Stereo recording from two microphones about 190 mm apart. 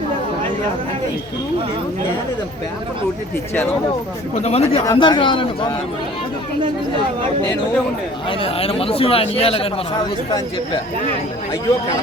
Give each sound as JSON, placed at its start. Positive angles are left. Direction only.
{"t": 4.4, "sound": "speech", "side_deg": 30}
{"t": 8.3, "sound": "speech", "side_deg": 30}